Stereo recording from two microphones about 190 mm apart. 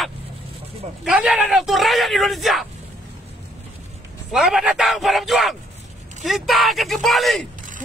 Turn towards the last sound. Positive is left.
turn(degrees=0)  # may be behind; listen again after turning